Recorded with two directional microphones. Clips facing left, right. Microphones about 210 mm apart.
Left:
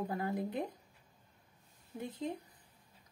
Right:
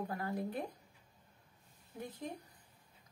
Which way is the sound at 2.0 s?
25° left (ahead or behind).